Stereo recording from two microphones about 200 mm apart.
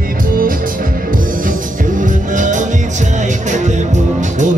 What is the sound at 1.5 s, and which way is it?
Music, 40° right (ahead or behind).